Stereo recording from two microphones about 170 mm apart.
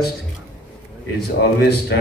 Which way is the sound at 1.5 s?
75° left (ahead or behind).